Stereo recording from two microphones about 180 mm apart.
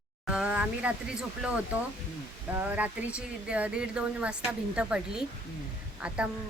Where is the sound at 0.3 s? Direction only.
5° right (ahead or behind).